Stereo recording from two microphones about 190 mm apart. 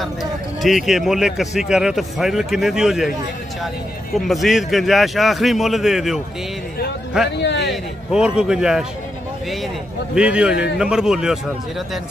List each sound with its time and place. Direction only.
0.0 s speech: centre (ahead or behind)
7.4 s a man's voice: 65° left (ahead or behind)
7.7 s speech: 5° right (ahead or behind)
10.1 s speech: 5° right (ahead or behind)